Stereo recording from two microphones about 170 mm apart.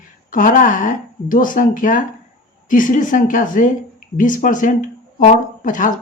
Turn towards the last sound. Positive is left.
turn(degrees=50)  # may be behind; listen again after turning